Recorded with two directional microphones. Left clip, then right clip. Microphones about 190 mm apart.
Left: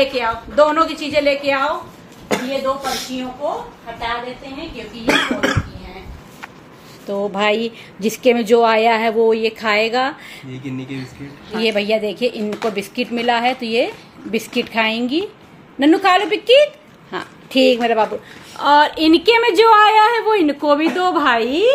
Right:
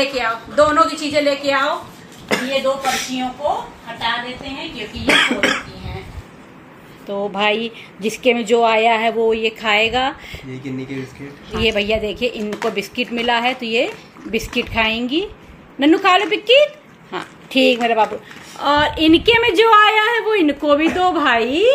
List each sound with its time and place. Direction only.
0.1 s a woman's voice: 40° left (ahead or behind)
2.2 s speech: 10° left (ahead or behind)
5.2 s cough: 5° left (ahead or behind)
7.1 s speech: 15° left (ahead or behind)
11.5 s speech: 10° left (ahead or behind)